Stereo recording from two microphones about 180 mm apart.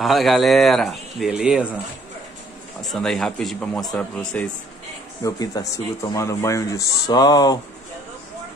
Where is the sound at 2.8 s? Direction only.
Centre (ahead or behind).